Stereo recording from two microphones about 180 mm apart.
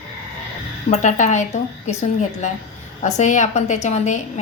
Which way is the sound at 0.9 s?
40° left (ahead or behind).